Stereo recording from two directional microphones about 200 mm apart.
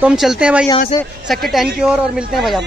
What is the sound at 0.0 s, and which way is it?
Speech, centre (ahead or behind).